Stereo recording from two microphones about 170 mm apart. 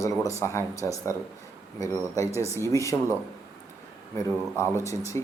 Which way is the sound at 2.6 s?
20° left (ahead or behind).